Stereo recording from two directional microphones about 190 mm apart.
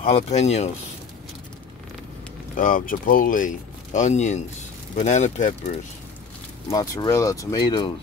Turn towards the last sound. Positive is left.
turn(degrees=20)  # may be behind; listen again after turning